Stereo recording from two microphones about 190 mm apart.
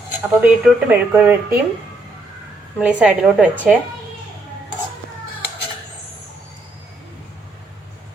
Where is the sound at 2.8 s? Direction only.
5° right (ahead or behind).